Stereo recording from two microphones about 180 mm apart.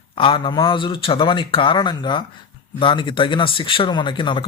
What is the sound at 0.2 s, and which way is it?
Speech, 25° left (ahead or behind).